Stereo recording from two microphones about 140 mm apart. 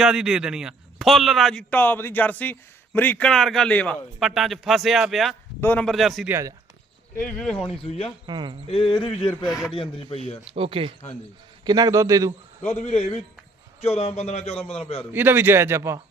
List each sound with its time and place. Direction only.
0.0 s a man's voice: 5° right (ahead or behind)
4.2 s a man's voice: centre (ahead or behind)
5.5 s a man's voice: 15° left (ahead or behind)
5.9 s a man's voice: centre (ahead or behind)
8.3 s speech: 35° right (ahead or behind)
8.7 s speech: 35° left (ahead or behind)
10.5 s speech: 40° right (ahead or behind)
11.6 s a man's voice: 30° right (ahead or behind)
12.6 s speech: 50° left (ahead or behind)
15.1 s a man's voice: 15° right (ahead or behind)